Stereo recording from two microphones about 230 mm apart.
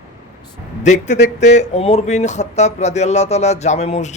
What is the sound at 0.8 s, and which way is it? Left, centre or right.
Speech, left.